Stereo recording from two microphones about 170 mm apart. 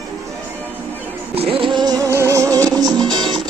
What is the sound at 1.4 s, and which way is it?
Music, 35° right (ahead or behind).